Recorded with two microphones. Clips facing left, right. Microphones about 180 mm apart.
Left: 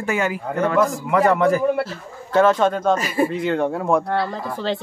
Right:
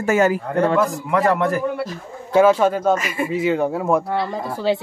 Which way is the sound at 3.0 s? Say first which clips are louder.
Left 4 dB; 35° left (ahead or behind).